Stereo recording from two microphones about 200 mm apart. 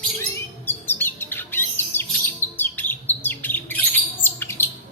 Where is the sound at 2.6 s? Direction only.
10° left (ahead or behind).